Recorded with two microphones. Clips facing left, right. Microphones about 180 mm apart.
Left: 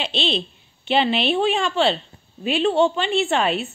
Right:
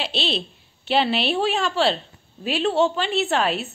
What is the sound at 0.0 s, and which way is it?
Speech, 5° right (ahead or behind).